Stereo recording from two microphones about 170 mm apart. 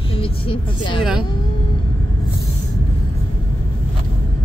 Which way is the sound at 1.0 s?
5° right (ahead or behind).